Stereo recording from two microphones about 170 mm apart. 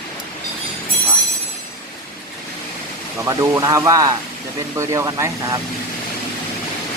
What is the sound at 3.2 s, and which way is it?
Speech, 20° right (ahead or behind).